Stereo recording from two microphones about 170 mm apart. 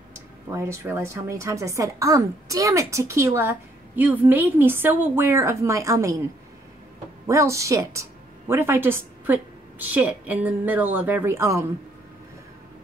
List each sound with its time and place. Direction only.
0.1 s a woman's voice: 15° right (ahead or behind)
7.2 s a woman's voice: 15° right (ahead or behind)